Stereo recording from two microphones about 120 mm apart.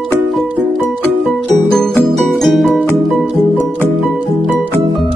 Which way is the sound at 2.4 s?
Centre (ahead or behind).